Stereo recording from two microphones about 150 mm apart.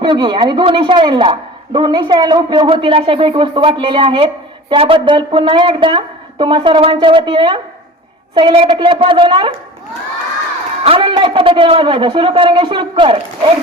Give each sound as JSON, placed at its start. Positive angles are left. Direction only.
{"t": 0.0, "sound": "a woman's voice", "side_deg": -35}
{"t": 10.8, "sound": "a woman's voice", "side_deg": -40}